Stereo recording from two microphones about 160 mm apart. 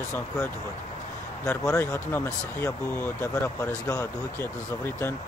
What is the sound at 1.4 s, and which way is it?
Speech, 20° left (ahead or behind).